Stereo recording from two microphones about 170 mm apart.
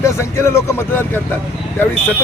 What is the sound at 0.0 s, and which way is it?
A man's voice, 15° left (ahead or behind).